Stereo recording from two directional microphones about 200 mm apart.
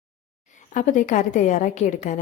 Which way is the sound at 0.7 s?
40° left (ahead or behind).